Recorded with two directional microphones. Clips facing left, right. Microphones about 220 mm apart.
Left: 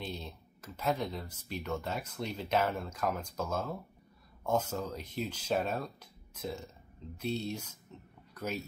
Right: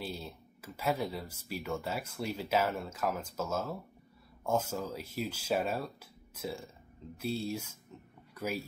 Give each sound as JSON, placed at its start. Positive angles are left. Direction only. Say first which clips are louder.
{"t": 0.0, "sound": "speech", "louder": "right 1 dB", "side_deg": -5}